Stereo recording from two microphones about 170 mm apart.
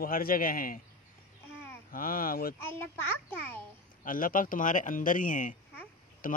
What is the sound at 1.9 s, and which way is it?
Speech, 55° left (ahead or behind).